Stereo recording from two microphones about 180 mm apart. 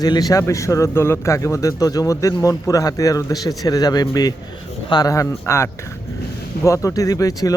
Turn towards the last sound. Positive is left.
turn(degrees=20)  # may be behind; listen again after turning